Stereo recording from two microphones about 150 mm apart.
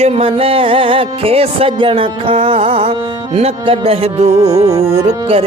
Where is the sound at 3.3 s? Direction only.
40° right (ahead or behind).